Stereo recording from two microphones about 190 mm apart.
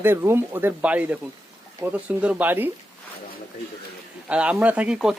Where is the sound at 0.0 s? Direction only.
10° right (ahead or behind).